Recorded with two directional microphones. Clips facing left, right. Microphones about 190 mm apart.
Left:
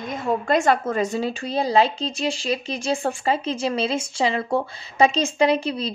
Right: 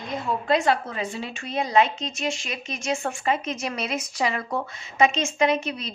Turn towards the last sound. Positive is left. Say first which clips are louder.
# left 3 dB
turn(degrees=30)  # may be behind; listen again after turning